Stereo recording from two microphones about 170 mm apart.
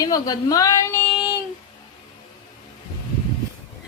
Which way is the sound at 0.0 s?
20° left (ahead or behind).